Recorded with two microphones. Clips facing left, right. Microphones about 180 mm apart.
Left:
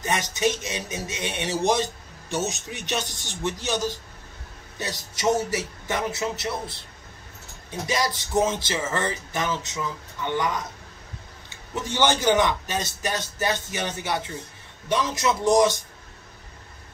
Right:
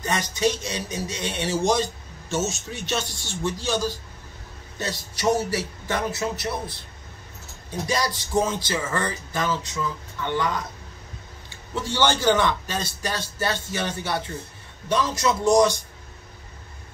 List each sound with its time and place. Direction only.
0.0 s speech: 20° left (ahead or behind)
7.8 s speech: 20° left (ahead or behind)
11.7 s a man's voice: 20° left (ahead or behind)